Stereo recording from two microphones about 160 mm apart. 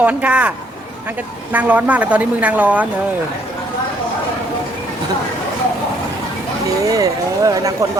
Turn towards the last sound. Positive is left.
turn(degrees=-20)  # may be behind; listen again after turning